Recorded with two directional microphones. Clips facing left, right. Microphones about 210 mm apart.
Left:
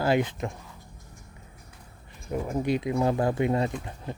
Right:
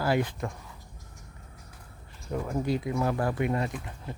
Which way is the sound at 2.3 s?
20° left (ahead or behind).